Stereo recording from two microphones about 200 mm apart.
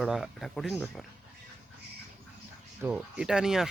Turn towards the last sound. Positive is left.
turn(degrees=-5)  # may be behind; listen again after turning